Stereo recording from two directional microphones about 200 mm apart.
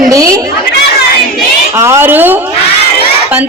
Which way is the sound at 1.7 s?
10° right (ahead or behind).